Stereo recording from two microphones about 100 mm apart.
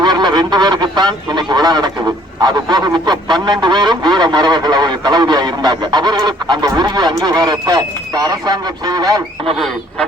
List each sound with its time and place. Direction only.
0.0 s speech: 45° right (ahead or behind)
9.5 s speech: centre (ahead or behind)